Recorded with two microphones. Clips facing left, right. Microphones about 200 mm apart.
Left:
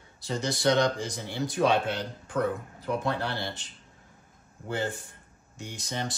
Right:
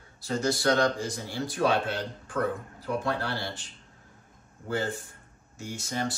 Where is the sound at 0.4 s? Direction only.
20° left (ahead or behind).